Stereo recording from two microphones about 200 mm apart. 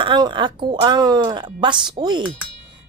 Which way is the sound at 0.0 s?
20° right (ahead or behind).